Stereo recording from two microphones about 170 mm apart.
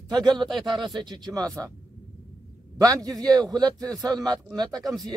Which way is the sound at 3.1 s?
5° left (ahead or behind).